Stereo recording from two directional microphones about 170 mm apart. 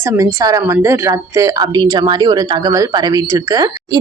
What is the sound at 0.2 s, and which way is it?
A woman's voice, 20° right (ahead or behind).